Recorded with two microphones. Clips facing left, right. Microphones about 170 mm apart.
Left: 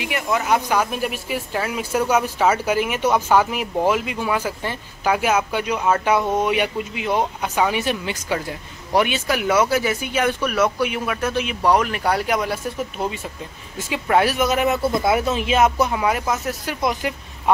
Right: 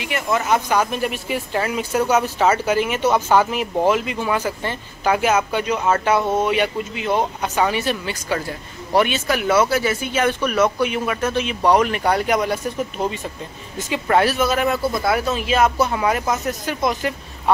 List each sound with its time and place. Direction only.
0.0 s speech: 5° left (ahead or behind)
15.9 s speech: 5° left (ahead or behind)